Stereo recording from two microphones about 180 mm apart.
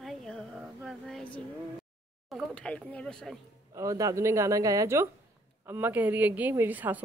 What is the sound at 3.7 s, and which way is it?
Speech, 15° right (ahead or behind).